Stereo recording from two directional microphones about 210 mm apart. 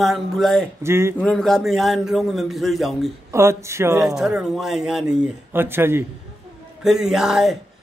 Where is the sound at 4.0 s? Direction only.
Centre (ahead or behind).